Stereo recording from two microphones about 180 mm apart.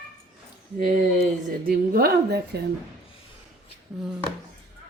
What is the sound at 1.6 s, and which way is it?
Speech, 55° right (ahead or behind).